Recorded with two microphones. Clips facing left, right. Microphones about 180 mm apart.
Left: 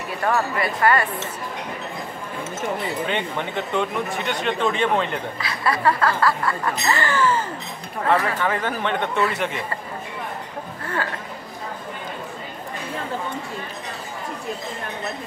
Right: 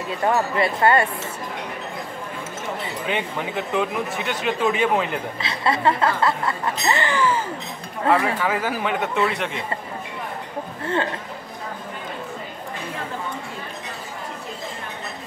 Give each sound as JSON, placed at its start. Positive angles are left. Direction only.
{"t": 0.1, "sound": "speech", "side_deg": -20}
{"t": 3.1, "sound": "speech", "side_deg": -5}
{"t": 5.4, "sound": "speech", "side_deg": -25}